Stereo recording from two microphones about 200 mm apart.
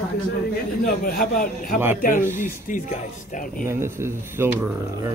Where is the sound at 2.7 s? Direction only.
40° left (ahead or behind).